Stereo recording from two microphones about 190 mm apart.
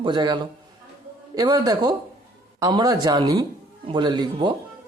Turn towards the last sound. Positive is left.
turn(degrees=-25)  # may be behind; listen again after turning